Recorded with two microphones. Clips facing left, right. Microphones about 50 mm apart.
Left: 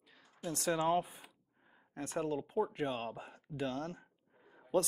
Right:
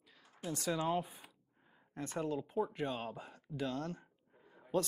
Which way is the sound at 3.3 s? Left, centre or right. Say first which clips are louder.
Even; left.